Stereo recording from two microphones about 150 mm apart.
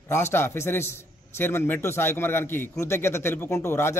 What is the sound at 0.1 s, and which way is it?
A man's voice, 15° left (ahead or behind).